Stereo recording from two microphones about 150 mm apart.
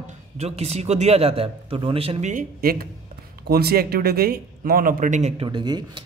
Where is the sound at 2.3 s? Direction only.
70° right (ahead or behind); by 5.4 s 45° right (ahead or behind).